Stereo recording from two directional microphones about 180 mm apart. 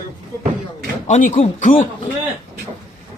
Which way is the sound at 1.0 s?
40° left (ahead or behind).